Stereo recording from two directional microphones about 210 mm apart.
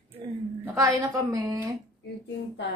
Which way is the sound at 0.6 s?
15° right (ahead or behind).